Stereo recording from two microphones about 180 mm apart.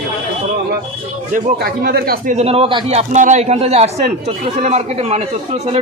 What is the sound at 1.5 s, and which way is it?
Speech, 60° right (ahead or behind).